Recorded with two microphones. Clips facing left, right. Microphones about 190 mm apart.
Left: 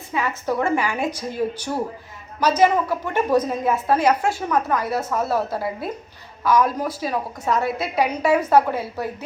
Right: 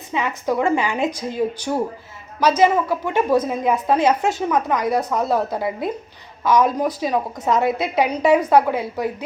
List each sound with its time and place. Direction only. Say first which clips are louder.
0.1 s a woman's voice: right 2 dB; 15° right (ahead or behind)